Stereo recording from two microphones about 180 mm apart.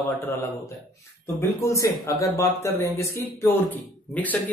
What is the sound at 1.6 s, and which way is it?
Speech, 15° left (ahead or behind).